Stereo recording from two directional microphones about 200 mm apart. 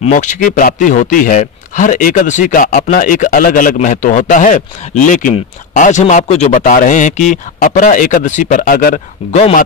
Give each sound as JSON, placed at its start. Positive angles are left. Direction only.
{"t": 0.0, "sound": "speech", "side_deg": 40}